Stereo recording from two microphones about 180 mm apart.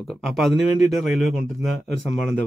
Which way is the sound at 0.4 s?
Centre (ahead or behind).